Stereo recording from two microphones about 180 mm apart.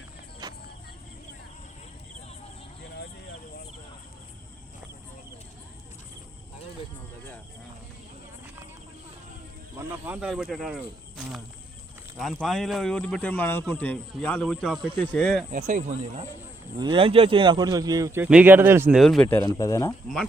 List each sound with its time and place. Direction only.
0.4 s a sound: 20° right (ahead or behind)
9.7 s speech: 10° right (ahead or behind)
15.5 s speech: 45° right (ahead or behind)
16.7 s speech: 25° right (ahead or behind); by 18.9 s 10° right (ahead or behind)
18.9 s speech: centre (ahead or behind)
19.5 s speech: 20° left (ahead or behind)